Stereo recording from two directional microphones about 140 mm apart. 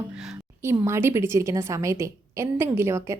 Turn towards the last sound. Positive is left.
turn(degrees=-20)  # may be behind; listen again after turning